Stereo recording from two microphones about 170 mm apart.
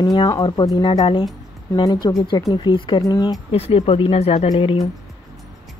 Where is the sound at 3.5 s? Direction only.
35° left (ahead or behind).